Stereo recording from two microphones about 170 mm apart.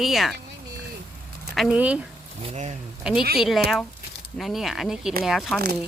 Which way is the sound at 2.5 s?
40° right (ahead or behind).